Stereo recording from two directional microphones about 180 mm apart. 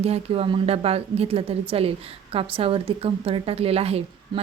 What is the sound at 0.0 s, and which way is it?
A woman's voice, 35° right (ahead or behind).